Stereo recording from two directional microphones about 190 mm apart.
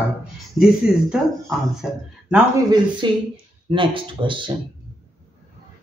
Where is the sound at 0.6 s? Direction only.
5° right (ahead or behind).